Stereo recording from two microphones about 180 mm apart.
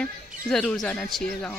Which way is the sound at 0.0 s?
5° left (ahead or behind).